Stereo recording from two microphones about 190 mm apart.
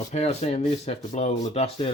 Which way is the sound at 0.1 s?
35° left (ahead or behind).